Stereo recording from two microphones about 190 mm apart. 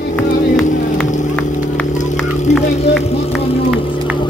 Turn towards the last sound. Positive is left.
turn(degrees=0)  # may be behind; listen again after turning